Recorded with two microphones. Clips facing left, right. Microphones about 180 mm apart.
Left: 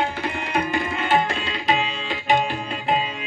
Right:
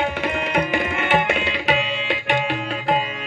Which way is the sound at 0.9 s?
70° right (ahead or behind).